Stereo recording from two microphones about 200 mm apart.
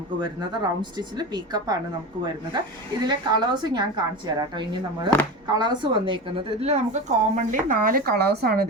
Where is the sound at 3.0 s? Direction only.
20° right (ahead or behind).